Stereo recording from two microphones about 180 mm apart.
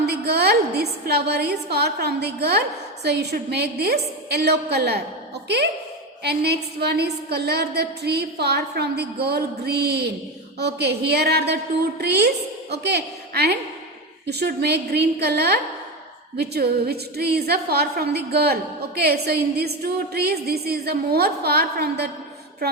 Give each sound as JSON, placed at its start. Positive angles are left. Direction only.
{"t": 0.0, "sound": "a woman's voice", "side_deg": -65}
{"t": 6.2, "sound": "a woman's voice", "side_deg": -65}